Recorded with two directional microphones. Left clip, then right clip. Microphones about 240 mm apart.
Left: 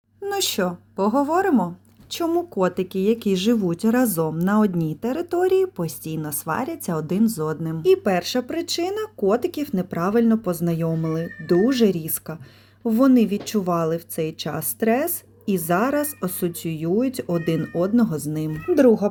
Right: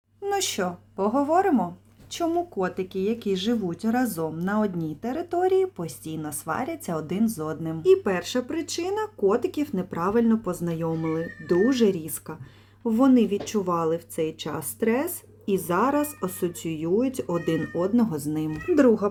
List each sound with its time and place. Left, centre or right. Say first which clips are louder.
0.3 s speech: left 3 dB; centre